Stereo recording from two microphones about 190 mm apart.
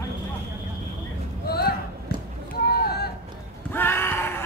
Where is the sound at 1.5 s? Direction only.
55° left (ahead or behind).